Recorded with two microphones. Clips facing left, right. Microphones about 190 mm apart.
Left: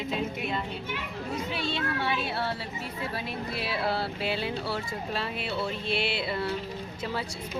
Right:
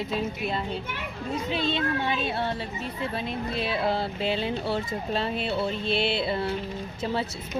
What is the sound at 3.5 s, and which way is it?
Speech, 20° right (ahead or behind).